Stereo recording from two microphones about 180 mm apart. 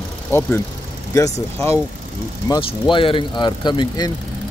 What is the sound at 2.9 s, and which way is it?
Speech, 30° left (ahead or behind).